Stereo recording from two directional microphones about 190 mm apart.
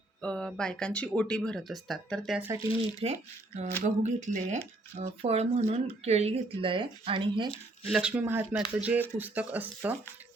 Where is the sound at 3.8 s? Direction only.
40° right (ahead or behind).